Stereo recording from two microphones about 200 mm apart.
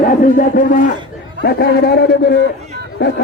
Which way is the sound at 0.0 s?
45° left (ahead or behind).